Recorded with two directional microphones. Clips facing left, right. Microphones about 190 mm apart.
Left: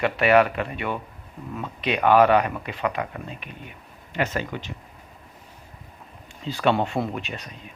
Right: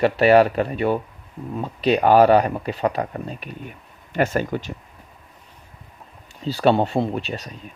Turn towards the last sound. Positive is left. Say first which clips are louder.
# right 5 dB
turn(degrees=-35)  # may be behind; listen again after turning